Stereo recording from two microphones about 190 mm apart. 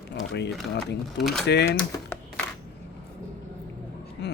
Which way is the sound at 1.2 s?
Centre (ahead or behind).